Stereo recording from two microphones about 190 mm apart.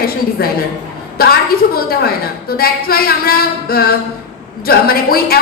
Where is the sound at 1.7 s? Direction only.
50° left (ahead or behind).